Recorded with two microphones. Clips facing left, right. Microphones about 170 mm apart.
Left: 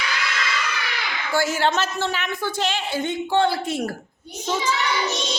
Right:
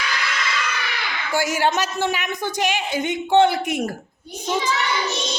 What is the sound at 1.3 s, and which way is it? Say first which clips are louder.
A woman's voice: even; 15° right (ahead or behind).